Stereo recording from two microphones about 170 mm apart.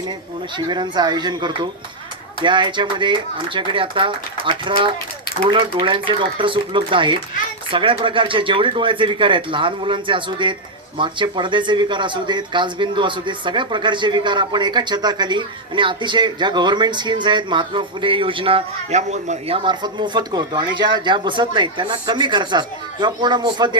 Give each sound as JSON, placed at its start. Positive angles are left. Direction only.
{"t": 0.5, "sound": "speech", "side_deg": -25}